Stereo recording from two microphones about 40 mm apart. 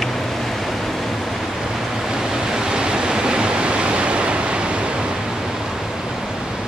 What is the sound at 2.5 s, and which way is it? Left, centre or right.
Pink noise, centre.